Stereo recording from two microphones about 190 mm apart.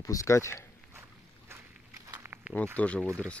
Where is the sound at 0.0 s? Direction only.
15° left (ahead or behind).